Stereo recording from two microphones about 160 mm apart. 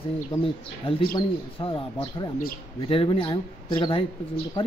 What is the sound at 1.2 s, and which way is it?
Speech, 30° left (ahead or behind).